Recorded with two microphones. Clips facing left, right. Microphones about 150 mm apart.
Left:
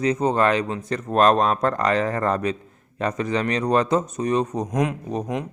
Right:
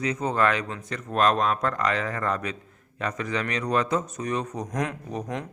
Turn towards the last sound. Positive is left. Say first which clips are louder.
# left 5 dB
turn(degrees=15)  # may be behind; listen again after turning